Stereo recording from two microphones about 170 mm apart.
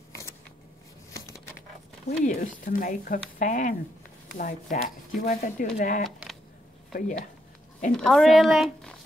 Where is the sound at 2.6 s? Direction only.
55° left (ahead or behind).